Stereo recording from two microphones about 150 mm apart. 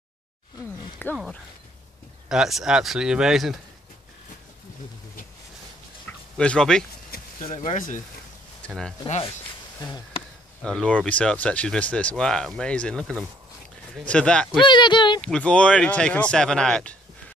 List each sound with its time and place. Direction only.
1.1 s speech: centre (ahead or behind)
6.0 s a sound: 5° left (ahead or behind)
7.4 s speech: 40° left (ahead or behind)
7.7 s speech: 55° left (ahead or behind)
8.6 s speech: 5° left (ahead or behind)
10.6 s speech: 5° left (ahead or behind)
14.6 s speech: 30° left (ahead or behind)
15.2 s speech: 5° left (ahead or behind)